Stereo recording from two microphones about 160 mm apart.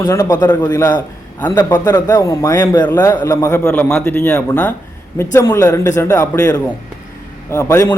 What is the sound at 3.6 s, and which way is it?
A man's voice, 5° left (ahead or behind).